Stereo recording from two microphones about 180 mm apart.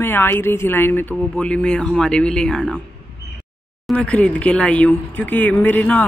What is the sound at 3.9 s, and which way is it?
Speech, 5° left (ahead or behind).